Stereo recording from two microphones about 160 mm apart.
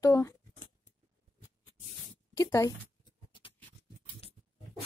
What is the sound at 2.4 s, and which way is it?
Speech, 20° left (ahead or behind).